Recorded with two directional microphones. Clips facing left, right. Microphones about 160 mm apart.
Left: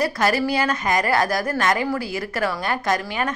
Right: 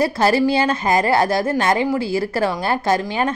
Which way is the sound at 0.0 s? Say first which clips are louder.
Right 4 dB; 30° right (ahead or behind).